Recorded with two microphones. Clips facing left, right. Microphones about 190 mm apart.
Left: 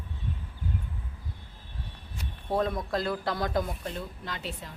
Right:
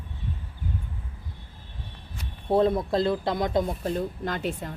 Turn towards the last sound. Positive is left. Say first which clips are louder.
# right 8 dB
turn(degrees=-50)  # may be behind; listen again after turning